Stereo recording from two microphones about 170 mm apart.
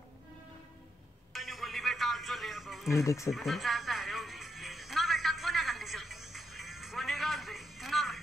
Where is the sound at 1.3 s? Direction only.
Centre (ahead or behind).